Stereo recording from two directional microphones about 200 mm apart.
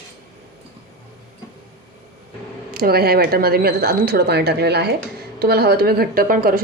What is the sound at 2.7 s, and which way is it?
Speech, 50° right (ahead or behind).